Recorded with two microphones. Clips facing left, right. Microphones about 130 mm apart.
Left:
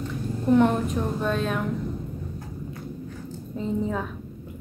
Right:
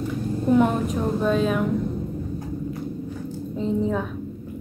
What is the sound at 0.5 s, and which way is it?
Speech, 5° right (ahead or behind).